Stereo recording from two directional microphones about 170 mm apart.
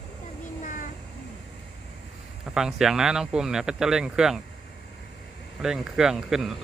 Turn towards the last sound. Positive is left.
turn(degrees=-5)  # may be behind; listen again after turning